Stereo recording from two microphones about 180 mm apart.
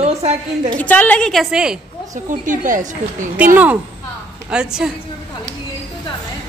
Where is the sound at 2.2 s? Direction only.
45° right (ahead or behind).